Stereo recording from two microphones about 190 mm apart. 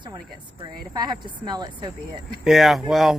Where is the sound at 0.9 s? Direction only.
20° right (ahead or behind).